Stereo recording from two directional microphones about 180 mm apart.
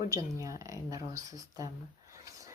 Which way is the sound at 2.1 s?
15° right (ahead or behind).